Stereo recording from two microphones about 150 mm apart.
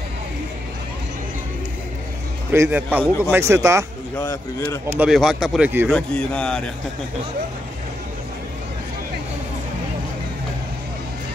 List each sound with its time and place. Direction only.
2.5 s a man's voice: 15° right (ahead or behind)
4.2 s speech: 20° left (ahead or behind)
4.9 s a man's voice: 5° right (ahead or behind)